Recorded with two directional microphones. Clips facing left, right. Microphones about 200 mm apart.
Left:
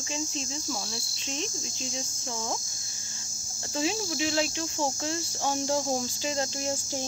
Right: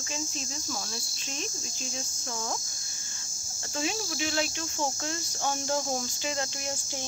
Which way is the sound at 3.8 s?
25° left (ahead or behind).